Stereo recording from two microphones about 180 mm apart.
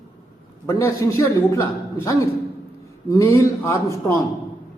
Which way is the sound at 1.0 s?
20° left (ahead or behind).